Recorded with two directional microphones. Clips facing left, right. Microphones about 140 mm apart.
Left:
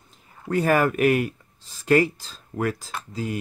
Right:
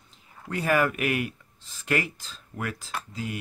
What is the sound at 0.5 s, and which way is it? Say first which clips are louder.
Speech: left 4 dB; 40° left (ahead or behind).